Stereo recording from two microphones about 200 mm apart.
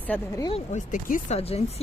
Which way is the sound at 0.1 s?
15° left (ahead or behind).